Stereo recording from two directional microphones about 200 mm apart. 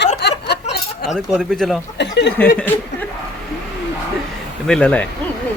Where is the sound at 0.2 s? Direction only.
55° left (ahead or behind).